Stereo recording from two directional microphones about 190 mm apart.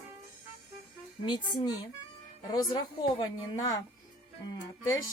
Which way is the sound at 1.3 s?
25° left (ahead or behind).